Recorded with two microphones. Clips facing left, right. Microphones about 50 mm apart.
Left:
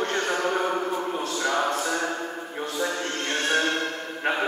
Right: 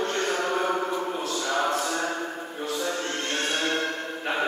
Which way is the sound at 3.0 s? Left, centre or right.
Left.